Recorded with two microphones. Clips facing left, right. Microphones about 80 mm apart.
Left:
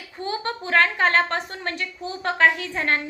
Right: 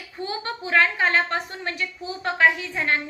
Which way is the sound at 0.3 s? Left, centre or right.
Left.